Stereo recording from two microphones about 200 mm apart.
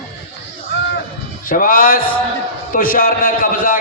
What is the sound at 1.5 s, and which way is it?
A man's voice, 45° left (ahead or behind).